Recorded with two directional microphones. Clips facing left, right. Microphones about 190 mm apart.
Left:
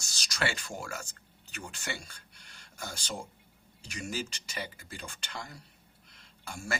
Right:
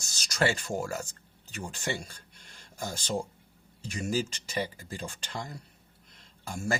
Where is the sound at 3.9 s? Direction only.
35° right (ahead or behind).